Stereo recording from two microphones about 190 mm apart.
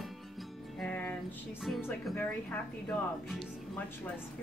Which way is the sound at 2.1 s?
10° left (ahead or behind).